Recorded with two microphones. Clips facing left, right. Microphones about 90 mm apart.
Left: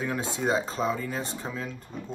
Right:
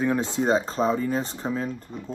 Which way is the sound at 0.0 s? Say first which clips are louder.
Right 5 dB; 35° right (ahead or behind).